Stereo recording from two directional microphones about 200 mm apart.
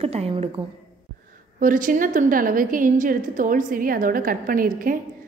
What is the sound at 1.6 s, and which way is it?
A woman's voice, 40° right (ahead or behind).